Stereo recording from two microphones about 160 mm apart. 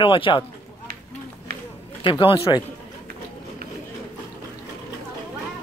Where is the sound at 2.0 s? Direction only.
35° left (ahead or behind).